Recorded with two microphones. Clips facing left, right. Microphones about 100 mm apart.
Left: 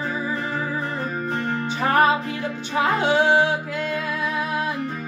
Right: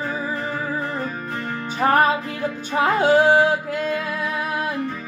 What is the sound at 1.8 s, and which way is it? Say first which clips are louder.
Music: right 1 dB; 40° right (ahead or behind).